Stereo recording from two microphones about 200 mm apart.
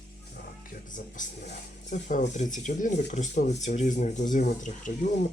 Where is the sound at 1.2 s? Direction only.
40° left (ahead or behind).